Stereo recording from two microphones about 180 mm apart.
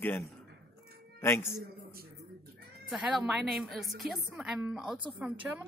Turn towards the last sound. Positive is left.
turn(degrees=-5)  # may be behind; listen again after turning